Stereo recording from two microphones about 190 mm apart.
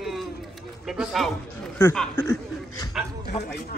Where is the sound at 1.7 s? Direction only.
10° left (ahead or behind).